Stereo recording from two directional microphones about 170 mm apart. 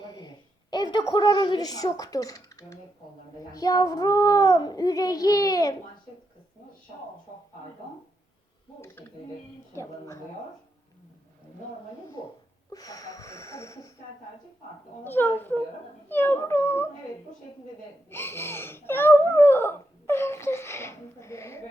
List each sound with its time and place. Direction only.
0.0 s a sound: 25° left (ahead or behind)
3.5 s a child's voice: 20° left (ahead or behind)
8.8 s speech: 10° left (ahead or behind)
12.7 s speech: 20° left (ahead or behind)
15.0 s speech: 10° left (ahead or behind)
18.1 s speech: 15° left (ahead or behind)